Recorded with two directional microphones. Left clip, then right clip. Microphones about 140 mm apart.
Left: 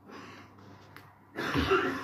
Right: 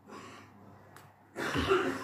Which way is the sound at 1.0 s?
5° left (ahead or behind).